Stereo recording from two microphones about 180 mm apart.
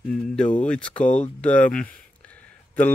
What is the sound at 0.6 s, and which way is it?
Speech, 5° left (ahead or behind).